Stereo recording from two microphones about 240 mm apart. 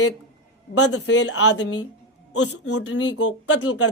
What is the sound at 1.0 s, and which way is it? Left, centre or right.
A man's voice, left.